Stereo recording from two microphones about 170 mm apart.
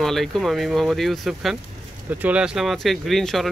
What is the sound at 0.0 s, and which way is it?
Speech, centre (ahead or behind).